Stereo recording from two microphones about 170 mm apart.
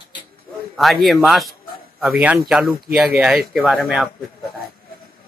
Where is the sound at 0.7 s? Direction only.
Centre (ahead or behind).